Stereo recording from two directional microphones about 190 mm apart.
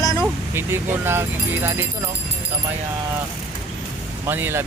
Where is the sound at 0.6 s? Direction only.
10° right (ahead or behind).